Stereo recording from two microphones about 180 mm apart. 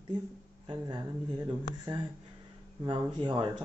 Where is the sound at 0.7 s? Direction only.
25° right (ahead or behind).